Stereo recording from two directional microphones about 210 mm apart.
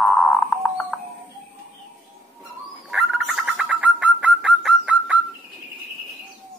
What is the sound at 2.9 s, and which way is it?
Bird, centre (ahead or behind).